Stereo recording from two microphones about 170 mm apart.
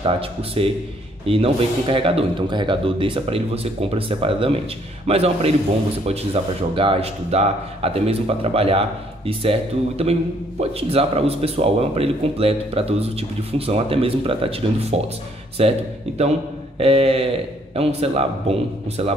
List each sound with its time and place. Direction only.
0.0 s speech: 35° right (ahead or behind)